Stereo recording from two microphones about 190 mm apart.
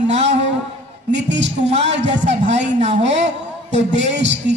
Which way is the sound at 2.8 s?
35° right (ahead or behind).